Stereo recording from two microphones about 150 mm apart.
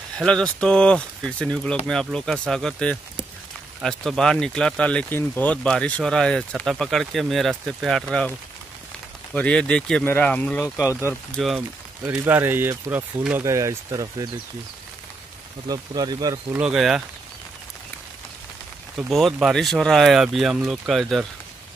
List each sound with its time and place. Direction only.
0.2 s speech: 5° left (ahead or behind)
9.3 s speech: 5° left (ahead or behind)
12.1 s speech: 15° right (ahead or behind)
15.7 s speech: 25° right (ahead or behind)
16.5 s speech: 5° right (ahead or behind)
18.9 s speech: centre (ahead or behind)